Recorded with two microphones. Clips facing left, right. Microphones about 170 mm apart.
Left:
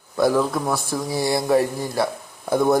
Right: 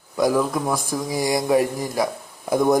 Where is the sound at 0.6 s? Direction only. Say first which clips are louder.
Even; 5° left (ahead or behind).